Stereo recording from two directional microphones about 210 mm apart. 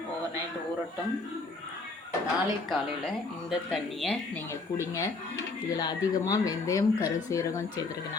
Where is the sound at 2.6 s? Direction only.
Centre (ahead or behind).